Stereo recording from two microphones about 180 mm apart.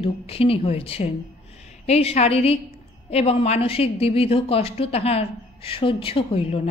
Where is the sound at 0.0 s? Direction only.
30° left (ahead or behind).